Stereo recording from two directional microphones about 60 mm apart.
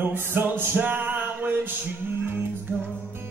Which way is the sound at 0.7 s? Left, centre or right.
Right.